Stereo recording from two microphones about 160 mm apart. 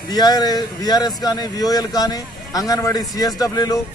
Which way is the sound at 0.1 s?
25° left (ahead or behind).